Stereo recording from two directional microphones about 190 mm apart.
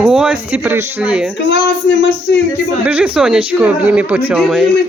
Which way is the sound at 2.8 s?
5° right (ahead or behind).